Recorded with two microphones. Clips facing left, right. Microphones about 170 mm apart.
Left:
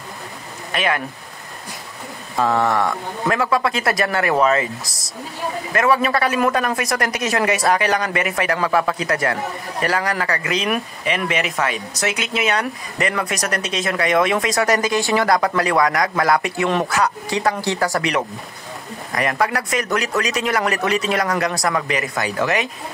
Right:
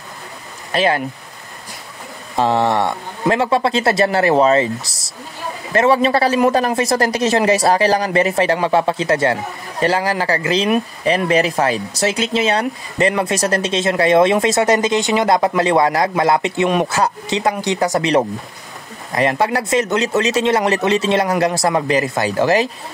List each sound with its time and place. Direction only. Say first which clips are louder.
0.7 s speech: right 5 dB; 30° right (ahead or behind)
2.3 s speech: right 2 dB; 25° right (ahead or behind)